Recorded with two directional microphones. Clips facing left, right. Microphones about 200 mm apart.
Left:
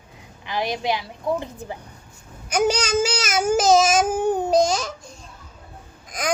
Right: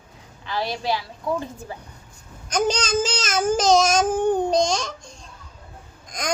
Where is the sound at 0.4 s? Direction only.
15° left (ahead or behind).